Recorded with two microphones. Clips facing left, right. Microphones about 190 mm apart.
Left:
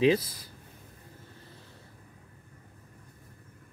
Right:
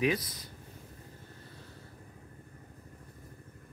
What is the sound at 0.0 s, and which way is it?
Speech, 30° left (ahead or behind).